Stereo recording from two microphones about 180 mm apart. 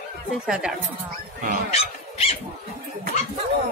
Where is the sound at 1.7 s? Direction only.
30° left (ahead or behind).